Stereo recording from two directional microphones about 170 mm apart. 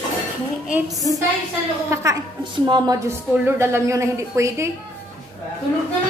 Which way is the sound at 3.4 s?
15° right (ahead or behind).